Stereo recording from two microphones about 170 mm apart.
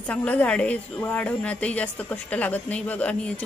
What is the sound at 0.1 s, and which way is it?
A woman's voice, 10° left (ahead or behind).